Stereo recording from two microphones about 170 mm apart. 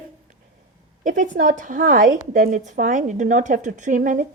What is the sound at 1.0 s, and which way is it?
Speech, 50° right (ahead or behind).